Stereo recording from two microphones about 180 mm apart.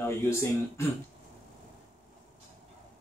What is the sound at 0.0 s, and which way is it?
Speech, 15° left (ahead or behind).